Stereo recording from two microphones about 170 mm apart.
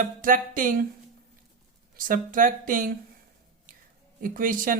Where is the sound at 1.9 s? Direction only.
55° right (ahead or behind).